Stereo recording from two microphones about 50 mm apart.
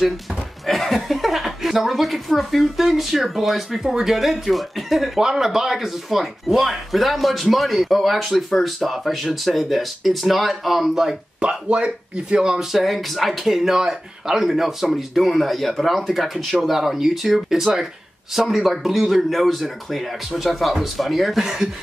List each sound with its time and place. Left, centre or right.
0.7 s speech: centre
11.3 s speech: centre
12.7 s speech: centre